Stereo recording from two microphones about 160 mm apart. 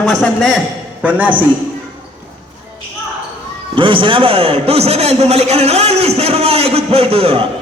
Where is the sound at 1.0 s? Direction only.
10° right (ahead or behind).